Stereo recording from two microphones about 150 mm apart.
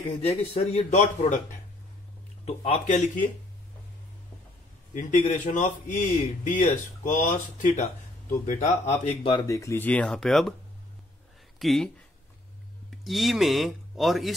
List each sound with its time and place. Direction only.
0.2 s speech: 45° left (ahead or behind)
2.4 s speech: 45° left (ahead or behind)
4.9 s speech: 55° left (ahead or behind)
9.3 s speech: 20° left (ahead or behind); by 10.5 s 5° left (ahead or behind)
11.6 s speech: centre (ahead or behind)
13.0 s speech: centre (ahead or behind)